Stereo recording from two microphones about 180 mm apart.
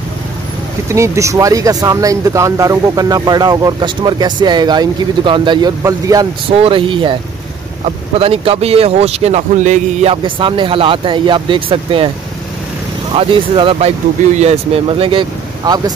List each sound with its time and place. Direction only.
0.8 s speech: 15° right (ahead or behind)
6.5 s speech: 30° right (ahead or behind)
10.2 s speech: 30° right (ahead or behind)
13.1 s speech: 30° right (ahead or behind)